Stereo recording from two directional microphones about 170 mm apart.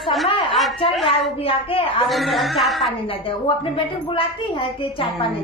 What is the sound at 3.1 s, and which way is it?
A woman's voice, 30° left (ahead or behind).